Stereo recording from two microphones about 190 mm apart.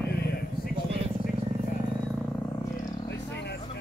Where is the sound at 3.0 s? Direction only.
60° left (ahead or behind).